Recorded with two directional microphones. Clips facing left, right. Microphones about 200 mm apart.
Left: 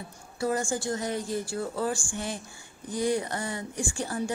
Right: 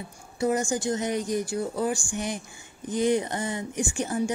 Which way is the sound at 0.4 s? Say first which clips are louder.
Right 3 dB; 20° right (ahead or behind).